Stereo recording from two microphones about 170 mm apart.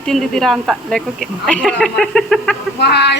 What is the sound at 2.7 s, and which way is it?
Speech, 80° left.